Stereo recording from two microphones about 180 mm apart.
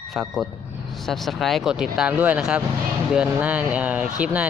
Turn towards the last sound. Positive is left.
turn(degrees=-5)  # may be behind; listen again after turning